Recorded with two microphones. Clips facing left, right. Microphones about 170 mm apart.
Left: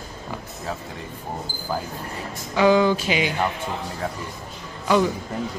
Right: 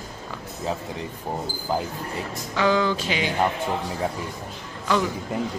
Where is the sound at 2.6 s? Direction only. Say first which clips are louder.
Left 4 dB; 15° left (ahead or behind).